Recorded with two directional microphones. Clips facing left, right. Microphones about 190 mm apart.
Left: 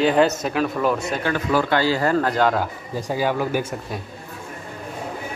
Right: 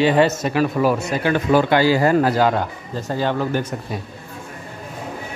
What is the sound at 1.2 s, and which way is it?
Speech, 25° right (ahead or behind).